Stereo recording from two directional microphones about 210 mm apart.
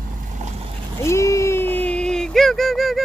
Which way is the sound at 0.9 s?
15° left (ahead or behind).